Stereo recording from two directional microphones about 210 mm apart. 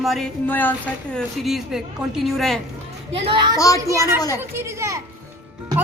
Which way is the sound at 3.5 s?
15° left (ahead or behind).